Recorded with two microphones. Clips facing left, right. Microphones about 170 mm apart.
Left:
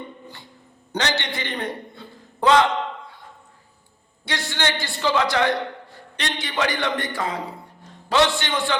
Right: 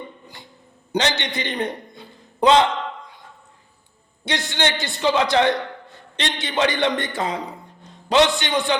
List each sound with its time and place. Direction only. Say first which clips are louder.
0.9 s a man's voice: right 3 dB; 20° right (ahead or behind)
4.3 s a man's voice: right 2 dB; 20° right (ahead or behind)